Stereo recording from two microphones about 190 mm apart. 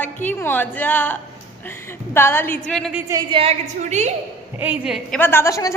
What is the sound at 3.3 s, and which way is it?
Speech, 30° right (ahead or behind).